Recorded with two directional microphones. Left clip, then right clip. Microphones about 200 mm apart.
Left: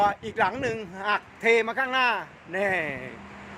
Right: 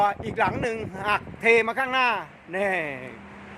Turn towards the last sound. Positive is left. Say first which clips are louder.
# even
turn(degrees=-5)  # may be behind; listen again after turning